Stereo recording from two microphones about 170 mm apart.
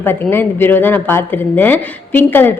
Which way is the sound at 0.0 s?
15° left (ahead or behind).